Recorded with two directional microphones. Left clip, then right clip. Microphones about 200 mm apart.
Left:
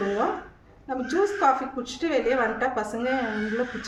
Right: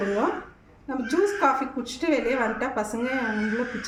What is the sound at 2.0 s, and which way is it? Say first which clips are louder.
A woman's voice: left 1 dB; 15° left (ahead or behind).